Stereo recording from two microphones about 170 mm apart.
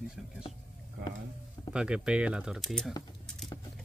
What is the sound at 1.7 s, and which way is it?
Speech, 5° right (ahead or behind).